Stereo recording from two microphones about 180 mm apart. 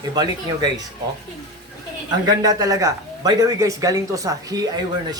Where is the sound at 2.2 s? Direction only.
20° right (ahead or behind).